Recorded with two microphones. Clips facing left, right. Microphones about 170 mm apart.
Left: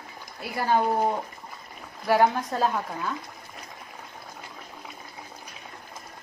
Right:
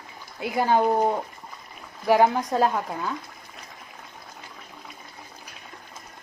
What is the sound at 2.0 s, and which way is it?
Speech, 15° right (ahead or behind).